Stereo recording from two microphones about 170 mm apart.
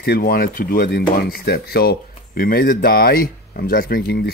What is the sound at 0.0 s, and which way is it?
Speech, 65° left (ahead or behind).